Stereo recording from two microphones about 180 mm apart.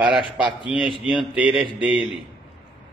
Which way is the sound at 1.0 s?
5° right (ahead or behind).